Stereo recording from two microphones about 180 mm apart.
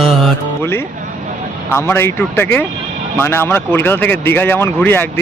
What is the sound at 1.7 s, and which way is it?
Speech, 15° left (ahead or behind).